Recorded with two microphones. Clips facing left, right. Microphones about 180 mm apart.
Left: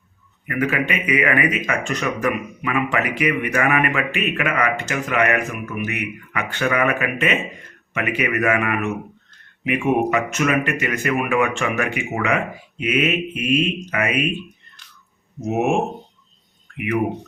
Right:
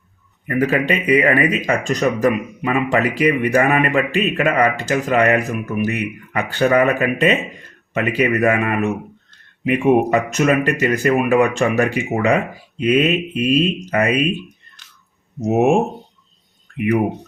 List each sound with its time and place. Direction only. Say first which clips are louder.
0.4 s speech: right 4 dB; 35° right (ahead or behind)